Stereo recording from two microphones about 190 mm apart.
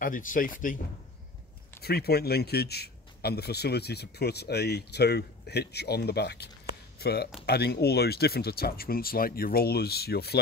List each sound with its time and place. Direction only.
0.0 s speech: 45° left (ahead or behind)
1.8 s a man's voice: 55° left (ahead or behind)